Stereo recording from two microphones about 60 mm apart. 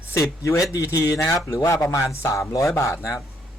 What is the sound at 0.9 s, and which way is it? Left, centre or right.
A man's voice, left.